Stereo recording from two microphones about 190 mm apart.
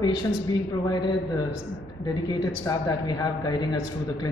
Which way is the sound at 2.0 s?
20° left (ahead or behind).